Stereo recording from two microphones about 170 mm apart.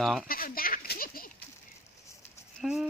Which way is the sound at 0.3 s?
60° left (ahead or behind).